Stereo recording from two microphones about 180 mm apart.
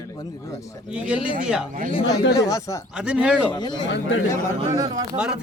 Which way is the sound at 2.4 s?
20° left (ahead or behind).